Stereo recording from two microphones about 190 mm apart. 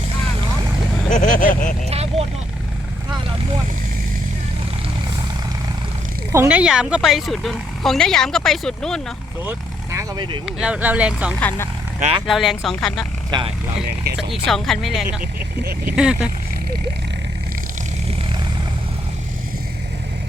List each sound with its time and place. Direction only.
1.1 s speech: 40° left (ahead or behind)
1.9 s vehicle: 35° right (ahead or behind)
6.3 s speech: 10° right (ahead or behind)
9.4 s speech: 15° right (ahead or behind)
10.4 s speech: 5° right (ahead or behind)
11.3 s speech: 10° left (ahead or behind)
12.3 s speech: centre (ahead or behind)
13.3 s speech: 20° right (ahead or behind)
14.0 s speech: 60° right (ahead or behind)
14.4 s speech: centre (ahead or behind)
15.2 s speech: 50° right (ahead or behind)
16.0 s speech: 5° right (ahead or behind)